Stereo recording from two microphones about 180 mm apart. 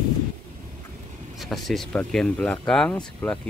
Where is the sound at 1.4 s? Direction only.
Centre (ahead or behind).